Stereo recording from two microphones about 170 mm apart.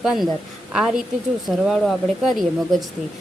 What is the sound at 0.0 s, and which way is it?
A woman's voice, centre (ahead or behind).